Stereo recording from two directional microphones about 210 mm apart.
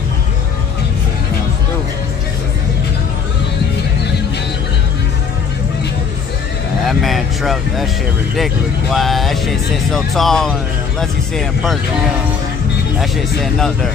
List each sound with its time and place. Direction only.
6.9 s a sound: centre (ahead or behind)
8.9 s speech: centre (ahead or behind)
13.0 s speech: centre (ahead or behind)